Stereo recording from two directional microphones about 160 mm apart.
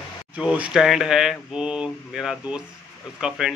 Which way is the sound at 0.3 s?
5° right (ahead or behind).